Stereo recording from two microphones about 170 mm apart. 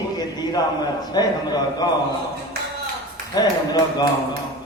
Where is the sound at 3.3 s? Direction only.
25° left (ahead or behind).